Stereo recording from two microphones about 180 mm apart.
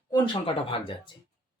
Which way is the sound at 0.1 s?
30° left (ahead or behind).